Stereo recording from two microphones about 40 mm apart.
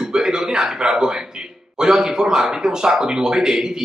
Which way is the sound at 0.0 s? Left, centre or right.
Centre.